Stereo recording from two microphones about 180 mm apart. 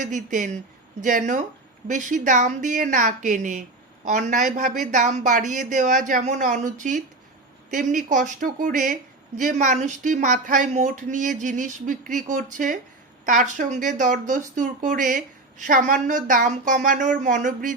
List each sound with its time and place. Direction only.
0.0 s speech: 45° right (ahead or behind)